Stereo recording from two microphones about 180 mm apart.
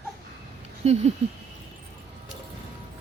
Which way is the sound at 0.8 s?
40° right (ahead or behind).